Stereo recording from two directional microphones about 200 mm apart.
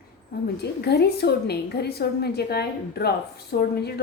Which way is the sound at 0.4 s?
55° left (ahead or behind).